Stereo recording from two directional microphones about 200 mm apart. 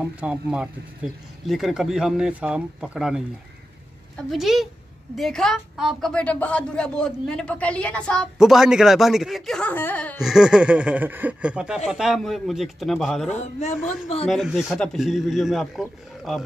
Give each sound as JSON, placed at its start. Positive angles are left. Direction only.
{"t": 0.0, "sound": "a woman's voice", "side_deg": -5}
{"t": 13.3, "sound": "speech", "side_deg": 35}
{"t": 14.2, "sound": "a woman's voice", "side_deg": 0}